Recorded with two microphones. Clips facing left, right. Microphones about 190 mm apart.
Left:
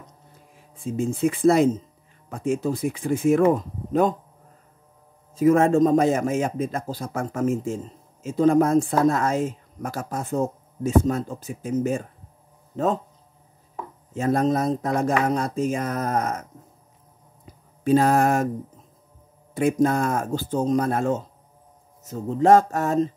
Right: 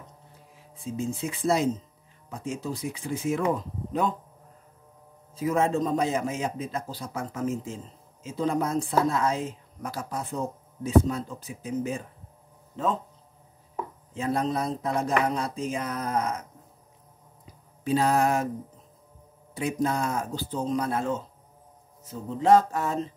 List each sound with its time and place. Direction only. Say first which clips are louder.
0.8 s a man's voice: left 8 dB; 55° left (ahead or behind)
5.3 s a man's voice: left 8 dB; 50° left (ahead or behind)
14.1 s a man's voice: left 6 dB; 45° left (ahead or behind)
17.8 s a man's voice: left 5 dB; 50° left (ahead or behind)
19.5 s a man's voice: left 7 dB; 50° left (ahead or behind)